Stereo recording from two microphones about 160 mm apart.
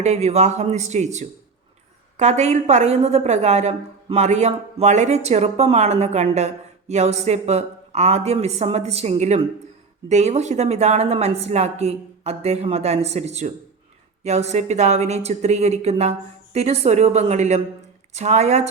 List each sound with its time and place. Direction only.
0.0 s a woman's voice: 45° right (ahead or behind)